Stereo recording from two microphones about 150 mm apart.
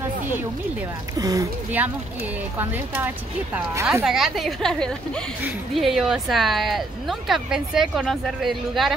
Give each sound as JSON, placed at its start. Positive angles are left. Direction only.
{"t": 1.1, "sound": "speech", "side_deg": -25}
{"t": 1.8, "sound": "speech", "side_deg": -10}
{"t": 4.0, "sound": "speech", "side_deg": -5}